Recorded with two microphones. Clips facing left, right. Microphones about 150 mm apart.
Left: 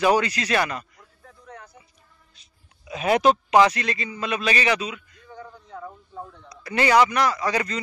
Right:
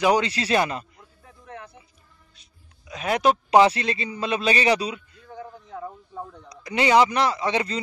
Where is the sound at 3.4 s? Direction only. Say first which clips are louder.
Right 1 dB; 30° right (ahead or behind).